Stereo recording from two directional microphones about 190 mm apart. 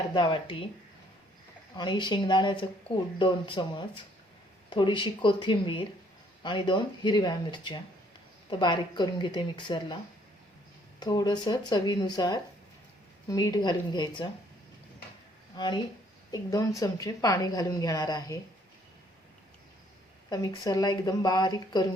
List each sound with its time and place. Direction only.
0.1 s a woman's voice: 25° left (ahead or behind)
1.7 s a woman's voice: 25° left (ahead or behind)
11.0 s a woman's voice: 20° left (ahead or behind)
15.5 s a woman's voice: 25° left (ahead or behind)
20.3 s a woman's voice: 20° left (ahead or behind)